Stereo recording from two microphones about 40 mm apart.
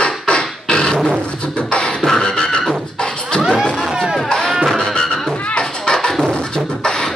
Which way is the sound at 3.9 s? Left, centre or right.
Centre.